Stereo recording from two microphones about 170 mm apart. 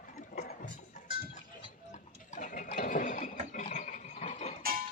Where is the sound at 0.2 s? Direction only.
50° left (ahead or behind).